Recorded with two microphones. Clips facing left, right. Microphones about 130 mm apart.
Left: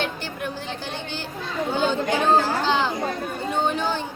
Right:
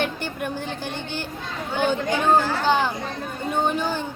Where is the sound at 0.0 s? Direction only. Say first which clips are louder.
Right 2 dB; 55° right (ahead or behind).